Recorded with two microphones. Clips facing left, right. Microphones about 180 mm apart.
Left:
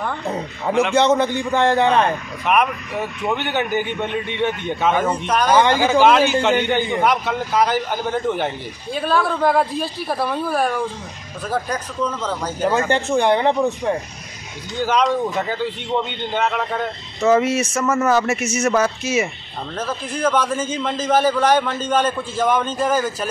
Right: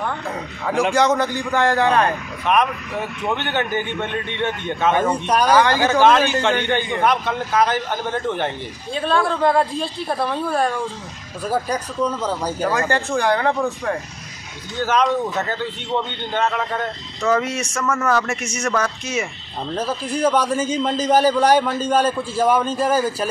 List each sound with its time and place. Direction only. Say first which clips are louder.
0.9 s a man's voice: left 2 dB; 20° left (ahead or behind)
5.1 s speech: right 1 dB; 10° right (ahead or behind)
5.6 s a man's voice: left 1 dB; 15° left (ahead or behind)
11.4 s speech: right 2 dB; 10° right (ahead or behind)
12.6 s a man's voice: left 3 dB; 20° left (ahead or behind)
20.2 s speech: right 1 dB; 10° right (ahead or behind)
21.7 s a man's voice: right 1 dB; 35° right (ahead or behind)
22.4 s speech: right 1 dB; 10° right (ahead or behind)